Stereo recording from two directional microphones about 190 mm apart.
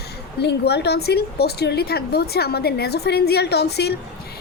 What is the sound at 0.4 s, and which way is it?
A woman's voice, 60° left (ahead or behind).